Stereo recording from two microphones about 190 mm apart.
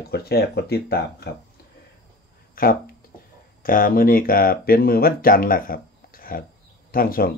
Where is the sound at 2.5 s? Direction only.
50° left (ahead or behind).